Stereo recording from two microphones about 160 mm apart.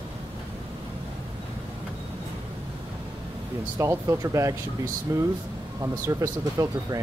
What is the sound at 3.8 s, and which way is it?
Speech, 20° right (ahead or behind).